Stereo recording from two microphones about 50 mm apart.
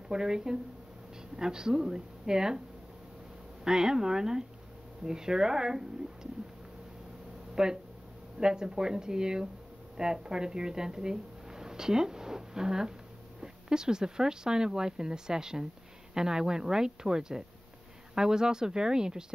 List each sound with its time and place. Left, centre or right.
0.1 s speech: centre
3.6 s speech: centre
7.5 s speech: centre